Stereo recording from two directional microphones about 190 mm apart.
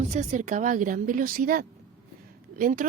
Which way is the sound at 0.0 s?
35° right (ahead or behind).